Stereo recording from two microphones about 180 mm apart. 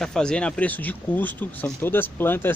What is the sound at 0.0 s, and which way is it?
Speech, 5° left (ahead or behind).